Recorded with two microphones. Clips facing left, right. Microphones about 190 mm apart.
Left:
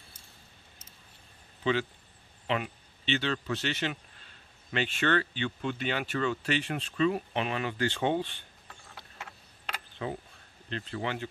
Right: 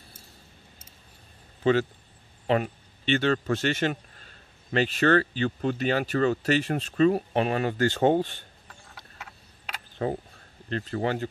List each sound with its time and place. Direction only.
1.6 s a man's voice: 45° right (ahead or behind)
10.0 s speech: 45° right (ahead or behind)